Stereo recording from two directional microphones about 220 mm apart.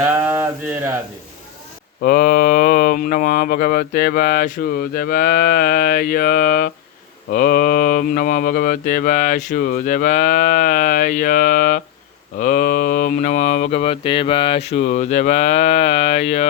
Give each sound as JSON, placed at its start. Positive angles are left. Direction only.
{"t": 2.0, "sound": "speech", "side_deg": 40}